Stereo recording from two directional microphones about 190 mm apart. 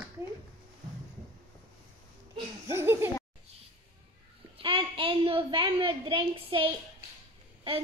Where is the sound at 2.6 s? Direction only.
15° right (ahead or behind).